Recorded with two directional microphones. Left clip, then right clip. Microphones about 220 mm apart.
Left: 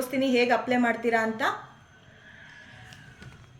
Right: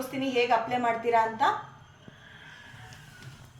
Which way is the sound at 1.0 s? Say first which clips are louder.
Right 1 dB; 50° left (ahead or behind).